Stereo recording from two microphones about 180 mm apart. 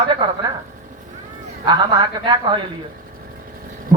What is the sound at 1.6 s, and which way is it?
Speech, 25° right (ahead or behind).